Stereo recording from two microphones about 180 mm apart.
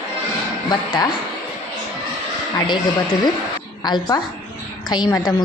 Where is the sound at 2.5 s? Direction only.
25° left (ahead or behind).